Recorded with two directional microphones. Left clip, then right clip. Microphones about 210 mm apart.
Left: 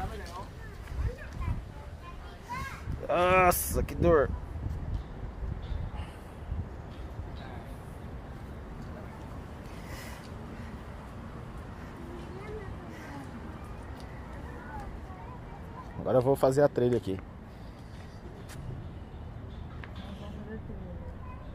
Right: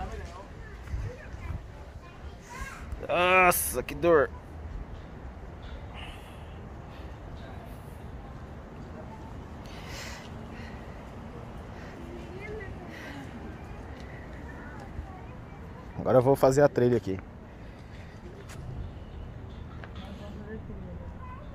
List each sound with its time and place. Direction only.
3.1 s speech: 15° right (ahead or behind)
9.8 s a sound: 15° right (ahead or behind)
16.0 s speech: 30° right (ahead or behind)